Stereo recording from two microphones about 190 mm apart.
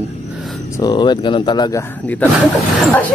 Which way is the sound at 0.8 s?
20° left (ahead or behind).